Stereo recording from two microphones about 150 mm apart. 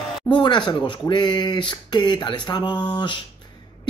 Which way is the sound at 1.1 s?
30° left (ahead or behind).